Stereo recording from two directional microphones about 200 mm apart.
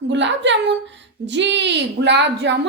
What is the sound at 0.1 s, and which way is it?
A woman's voice, 65° right (ahead or behind).